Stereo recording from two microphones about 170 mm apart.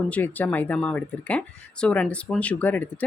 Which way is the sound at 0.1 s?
10° left (ahead or behind).